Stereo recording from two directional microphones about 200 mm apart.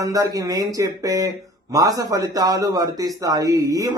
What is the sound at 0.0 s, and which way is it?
Speech, 15° right (ahead or behind).